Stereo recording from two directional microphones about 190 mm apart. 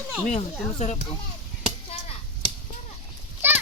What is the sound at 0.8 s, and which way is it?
Speech, 35° left (ahead or behind).